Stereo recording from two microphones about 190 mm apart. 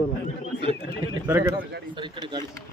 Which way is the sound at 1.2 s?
15° right (ahead or behind).